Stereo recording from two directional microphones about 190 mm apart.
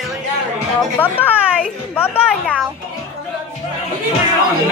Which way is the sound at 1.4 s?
5° right (ahead or behind).